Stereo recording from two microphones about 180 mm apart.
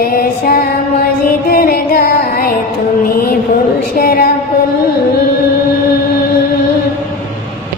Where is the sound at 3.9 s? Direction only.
60° left (ahead or behind).